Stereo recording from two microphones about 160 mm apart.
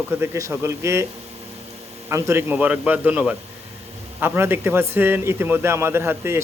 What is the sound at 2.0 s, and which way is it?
A man's voice, 15° right (ahead or behind).